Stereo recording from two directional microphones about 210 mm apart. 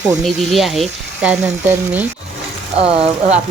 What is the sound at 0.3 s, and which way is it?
Speech, centre (ahead or behind).